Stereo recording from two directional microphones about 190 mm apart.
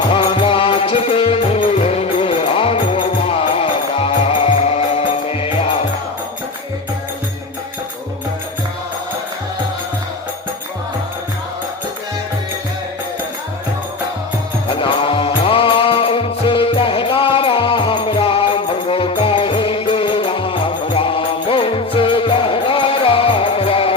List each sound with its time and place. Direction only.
0.1 s music: 25° left (ahead or behind)
14.7 s music: 25° left (ahead or behind)